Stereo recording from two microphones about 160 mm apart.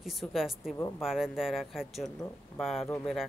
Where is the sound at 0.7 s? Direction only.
15° left (ahead or behind).